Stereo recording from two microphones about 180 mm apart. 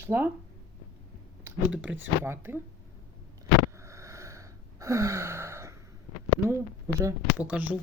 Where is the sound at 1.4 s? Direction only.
10° right (ahead or behind).